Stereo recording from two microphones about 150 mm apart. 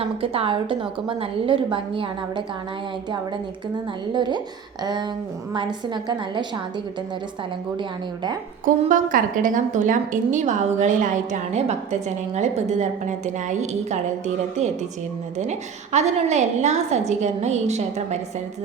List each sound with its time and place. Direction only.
0.0 s a woman's voice: 40° right (ahead or behind)
4.1 s a woman's voice: 30° right (ahead or behind)
7.8 s a woman's voice: 30° right (ahead or behind)
8.6 s a woman's voice: 65° right (ahead or behind)
15.4 s a woman's voice: 50° right (ahead or behind)